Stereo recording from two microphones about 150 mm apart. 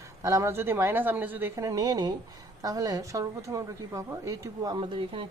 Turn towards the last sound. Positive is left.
turn(degrees=-35)  # may be behind; listen again after turning